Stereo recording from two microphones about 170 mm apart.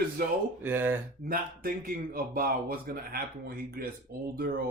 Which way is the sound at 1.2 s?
60° right (ahead or behind).